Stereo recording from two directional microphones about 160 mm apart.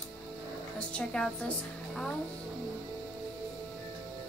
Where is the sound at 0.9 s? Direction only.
5° left (ahead or behind).